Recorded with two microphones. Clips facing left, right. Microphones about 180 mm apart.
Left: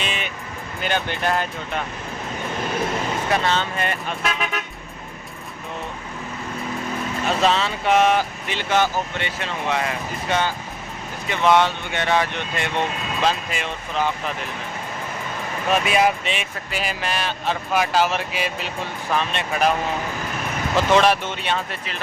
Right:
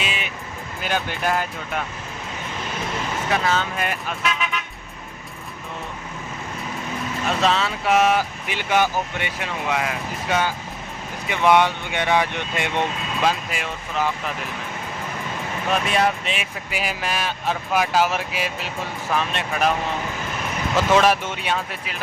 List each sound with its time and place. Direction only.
0.0 s music: 5° right (ahead or behind)
0.8 s speech: 5° right (ahead or behind)
3.2 s speech: 5° right (ahead or behind)
4.2 s speech: 40° left (ahead or behind)
7.3 s speech: centre (ahead or behind); by 12.8 s 15° right (ahead or behind)
13.2 s speech: 5° right (ahead or behind)
15.7 s speech: 5° left (ahead or behind)
20.9 s speech: 5° right (ahead or behind)